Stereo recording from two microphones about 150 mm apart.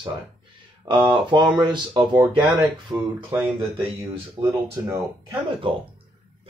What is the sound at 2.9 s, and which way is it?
Speech, 20° right (ahead or behind).